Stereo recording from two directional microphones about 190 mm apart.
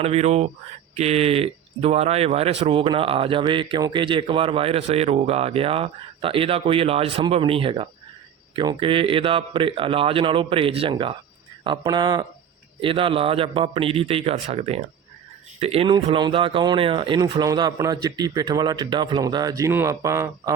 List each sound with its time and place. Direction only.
0.0 s speech: 35° right (ahead or behind); by 20.5 s 15° right (ahead or behind)